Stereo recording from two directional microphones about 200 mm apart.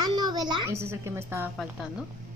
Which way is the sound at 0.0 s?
20° right (ahead or behind).